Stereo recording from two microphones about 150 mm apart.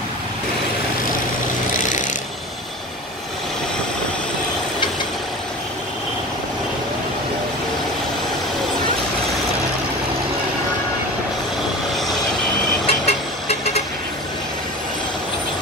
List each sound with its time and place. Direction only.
12.8 s vehicle: 45° left (ahead or behind)